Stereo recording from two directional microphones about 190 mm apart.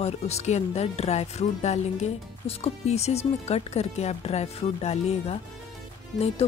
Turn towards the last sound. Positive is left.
turn(degrees=30)  # may be behind; listen again after turning